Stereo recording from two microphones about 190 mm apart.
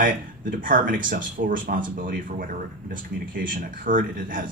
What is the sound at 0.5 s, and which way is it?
A man's voice, 45° right (ahead or behind).